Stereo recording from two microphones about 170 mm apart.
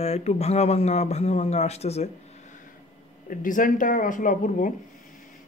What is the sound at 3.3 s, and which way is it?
Speech, 50° left (ahead or behind).